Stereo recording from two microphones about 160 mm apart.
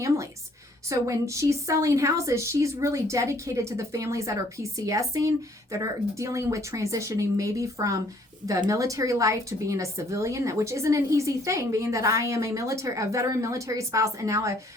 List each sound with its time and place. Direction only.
0.9 s a woman's voice: 20° right (ahead or behind)